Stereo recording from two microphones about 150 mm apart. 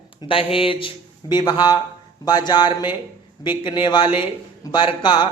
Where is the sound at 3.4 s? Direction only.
30° left (ahead or behind).